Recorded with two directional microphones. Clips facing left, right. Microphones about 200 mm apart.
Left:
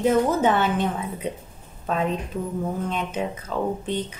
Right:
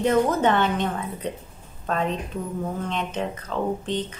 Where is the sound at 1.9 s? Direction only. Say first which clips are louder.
Left 1 dB; 5° left (ahead or behind).